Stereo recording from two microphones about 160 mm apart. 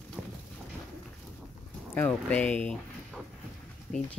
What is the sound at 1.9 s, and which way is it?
Speech, 10° left (ahead or behind).